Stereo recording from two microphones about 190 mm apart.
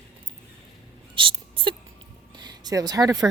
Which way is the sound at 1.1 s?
25° right (ahead or behind).